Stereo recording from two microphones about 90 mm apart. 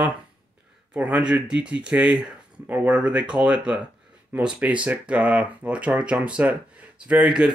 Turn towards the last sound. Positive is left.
turn(degrees=-10)  # may be behind; listen again after turning